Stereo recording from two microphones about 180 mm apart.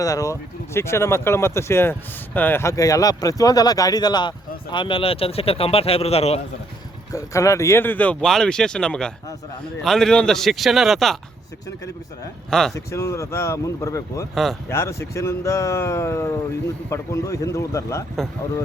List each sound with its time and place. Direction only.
0.0 s speech: 20° left (ahead or behind); by 6.4 s 35° left (ahead or behind)
7.1 s speech: 15° left (ahead or behind); by 11.2 s centre (ahead or behind)
12.5 s speech: 5° left (ahead or behind)
12.7 s speech: 15° left (ahead or behind)